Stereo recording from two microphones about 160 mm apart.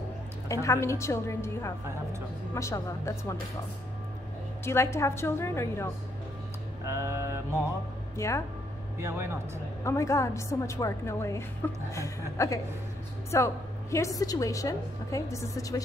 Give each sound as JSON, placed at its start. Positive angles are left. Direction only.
{"t": 0.5, "sound": "a woman's voice", "side_deg": 20}
{"t": 4.6, "sound": "a woman's voice", "side_deg": 15}
{"t": 6.9, "sound": "a sound", "side_deg": -15}
{"t": 8.2, "sound": "a woman's voice", "side_deg": 20}
{"t": 8.9, "sound": "speech", "side_deg": -15}
{"t": 9.8, "sound": "a woman's voice", "side_deg": 20}